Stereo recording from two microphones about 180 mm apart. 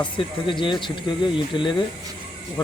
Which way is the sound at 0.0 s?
25° left (ahead or behind).